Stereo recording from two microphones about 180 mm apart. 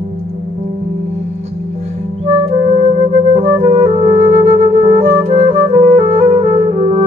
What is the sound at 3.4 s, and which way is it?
Music, 35° right (ahead or behind).